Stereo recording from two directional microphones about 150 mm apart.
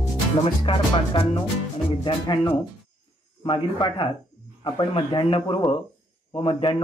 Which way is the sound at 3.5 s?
30° left (ahead or behind).